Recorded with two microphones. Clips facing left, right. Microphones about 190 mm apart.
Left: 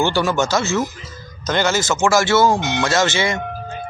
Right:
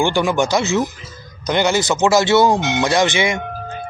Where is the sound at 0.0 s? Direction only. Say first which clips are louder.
Right 1 dB; 15° right (ahead or behind).